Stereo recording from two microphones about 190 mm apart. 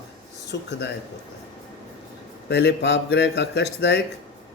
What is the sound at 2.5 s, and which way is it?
A man's voice, 60° left (ahead or behind).